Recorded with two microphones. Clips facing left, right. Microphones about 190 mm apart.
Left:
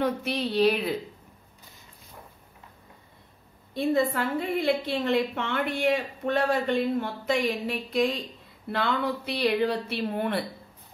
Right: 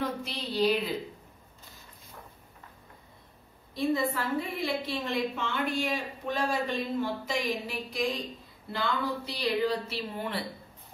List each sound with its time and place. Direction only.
0.0 s a woman's voice: 65° left (ahead or behind)
3.7 s a woman's voice: 60° left (ahead or behind)